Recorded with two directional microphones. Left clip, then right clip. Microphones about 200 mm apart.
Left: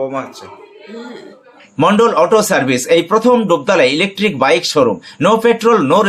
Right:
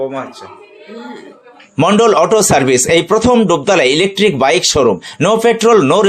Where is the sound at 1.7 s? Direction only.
35° right (ahead or behind).